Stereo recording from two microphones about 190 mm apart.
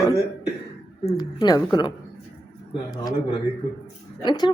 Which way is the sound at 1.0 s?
20° left (ahead or behind).